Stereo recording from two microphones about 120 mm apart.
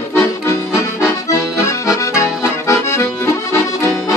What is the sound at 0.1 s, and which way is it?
Accordion, 25° left (ahead or behind).